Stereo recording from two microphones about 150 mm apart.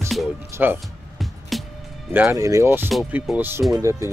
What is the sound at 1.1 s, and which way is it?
Music, centre (ahead or behind).